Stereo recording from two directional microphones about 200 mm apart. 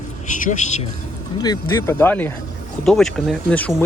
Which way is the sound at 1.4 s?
15° left (ahead or behind).